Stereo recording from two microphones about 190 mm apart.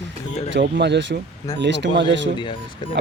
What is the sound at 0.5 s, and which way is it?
Speech, 65° right (ahead or behind).